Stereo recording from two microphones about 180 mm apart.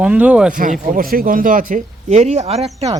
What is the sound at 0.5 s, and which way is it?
Speech, 50° right (ahead or behind).